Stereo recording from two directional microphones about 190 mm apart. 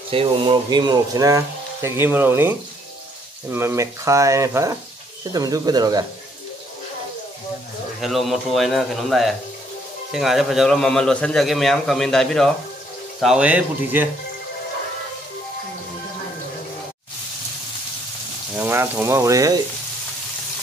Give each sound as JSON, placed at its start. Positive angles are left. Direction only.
{"t": 0.1, "sound": "speech", "side_deg": -30}
{"t": 8.0, "sound": "a man's voice", "side_deg": 0}
{"t": 18.6, "sound": "speech", "side_deg": -10}